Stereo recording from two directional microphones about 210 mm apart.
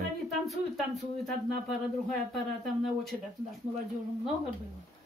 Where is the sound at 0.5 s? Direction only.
Centre (ahead or behind).